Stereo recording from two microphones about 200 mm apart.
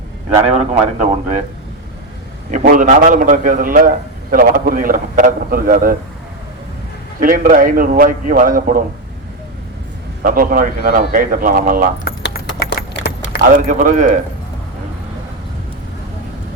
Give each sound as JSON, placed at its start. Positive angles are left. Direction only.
{"t": 0.4, "sound": "speech", "side_deg": -35}
{"t": 2.5, "sound": "a man's voice", "side_deg": -40}
{"t": 7.2, "sound": "a man's voice", "side_deg": -45}
{"t": 10.2, "sound": "a man's voice", "side_deg": -45}
{"t": 12.0, "sound": "keys jangling", "side_deg": 50}
{"t": 13.4, "sound": "speech", "side_deg": -40}